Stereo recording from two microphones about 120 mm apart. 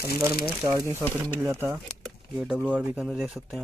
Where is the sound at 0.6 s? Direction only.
25° right (ahead or behind).